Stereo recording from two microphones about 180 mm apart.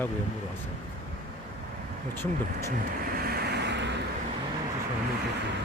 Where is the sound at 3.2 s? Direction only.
65° right (ahead or behind).